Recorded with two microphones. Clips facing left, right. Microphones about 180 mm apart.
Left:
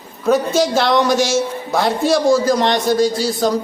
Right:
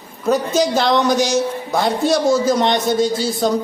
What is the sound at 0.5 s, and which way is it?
Speech, 5° left (ahead or behind).